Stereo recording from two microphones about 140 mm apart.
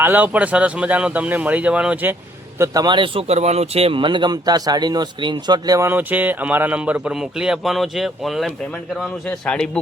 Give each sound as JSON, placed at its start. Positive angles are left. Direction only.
{"t": 0.0, "sound": "speech", "side_deg": -10}
{"t": 2.6, "sound": "a man's voice", "side_deg": -30}